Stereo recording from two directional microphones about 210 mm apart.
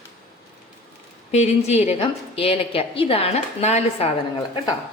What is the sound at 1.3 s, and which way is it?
A woman's voice, 30° left (ahead or behind).